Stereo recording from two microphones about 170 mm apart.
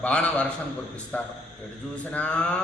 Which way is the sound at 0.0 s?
10° left (ahead or behind).